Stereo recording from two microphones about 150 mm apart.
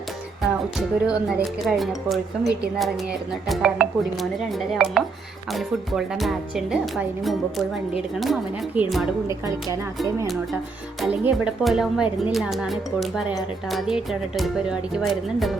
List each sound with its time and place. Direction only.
0.4 s music: 5° right (ahead or behind)
1.6 s speech: centre (ahead or behind)
9.2 s speech: 20° right (ahead or behind)
11.0 s speech: 10° right (ahead or behind)